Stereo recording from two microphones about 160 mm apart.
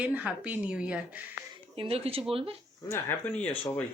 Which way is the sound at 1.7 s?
35° right (ahead or behind).